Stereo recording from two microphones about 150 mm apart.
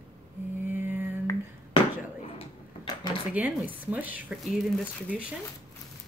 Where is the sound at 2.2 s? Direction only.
35° left (ahead or behind).